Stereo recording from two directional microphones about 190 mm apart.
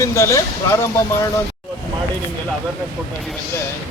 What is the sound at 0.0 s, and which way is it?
Speech, 15° left (ahead or behind).